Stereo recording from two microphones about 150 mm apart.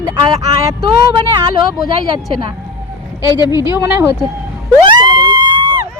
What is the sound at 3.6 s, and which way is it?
Speech, 15° right (ahead or behind).